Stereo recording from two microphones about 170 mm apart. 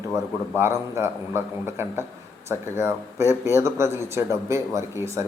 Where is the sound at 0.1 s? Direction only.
15° right (ahead or behind).